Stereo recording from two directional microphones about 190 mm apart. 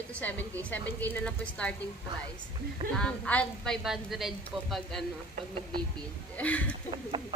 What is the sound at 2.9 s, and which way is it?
A woman's voice, 5° left (ahead or behind).